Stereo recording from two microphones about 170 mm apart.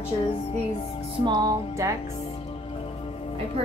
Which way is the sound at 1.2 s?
25° right (ahead or behind).